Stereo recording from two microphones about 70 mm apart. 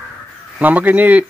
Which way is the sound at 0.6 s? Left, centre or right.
Right.